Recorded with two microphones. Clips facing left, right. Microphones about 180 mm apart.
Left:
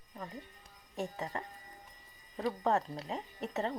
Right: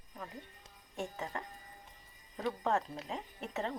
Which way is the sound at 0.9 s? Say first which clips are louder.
Left 2 dB; centre (ahead or behind).